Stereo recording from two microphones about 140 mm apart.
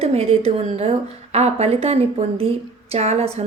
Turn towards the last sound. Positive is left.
turn(degrees=-50)  # may be behind; listen again after turning